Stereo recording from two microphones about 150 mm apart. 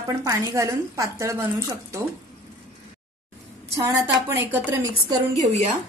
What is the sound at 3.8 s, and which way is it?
Speech, 20° right (ahead or behind).